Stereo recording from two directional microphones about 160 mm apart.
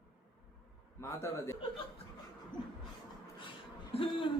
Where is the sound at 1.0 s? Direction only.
15° left (ahead or behind).